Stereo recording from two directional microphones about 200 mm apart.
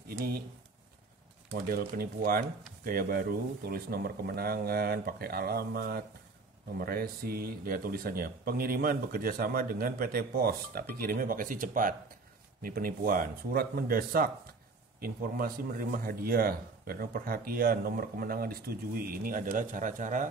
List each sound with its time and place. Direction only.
1.7 s a man's voice: 45° right (ahead or behind)